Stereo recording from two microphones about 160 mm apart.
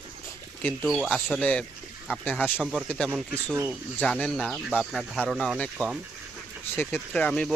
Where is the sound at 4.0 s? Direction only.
5° left (ahead or behind).